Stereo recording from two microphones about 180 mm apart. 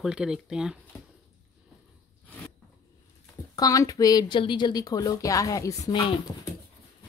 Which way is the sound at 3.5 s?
20° left (ahead or behind).